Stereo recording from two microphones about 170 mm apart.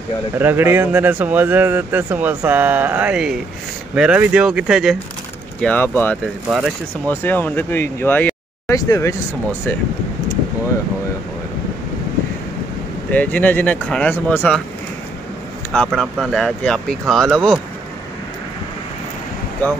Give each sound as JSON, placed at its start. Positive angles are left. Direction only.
{"t": 0.4, "sound": "speech", "side_deg": -10}
{"t": 5.6, "sound": "speech", "side_deg": 10}
{"t": 13.1, "sound": "speech", "side_deg": 10}
{"t": 15.7, "sound": "speech", "side_deg": 5}